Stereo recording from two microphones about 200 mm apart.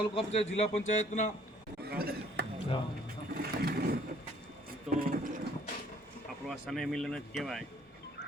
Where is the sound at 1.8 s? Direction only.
50° right (ahead or behind).